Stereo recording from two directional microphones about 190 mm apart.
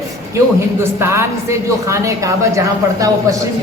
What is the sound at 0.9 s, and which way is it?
A woman's voice, 15° right (ahead or behind).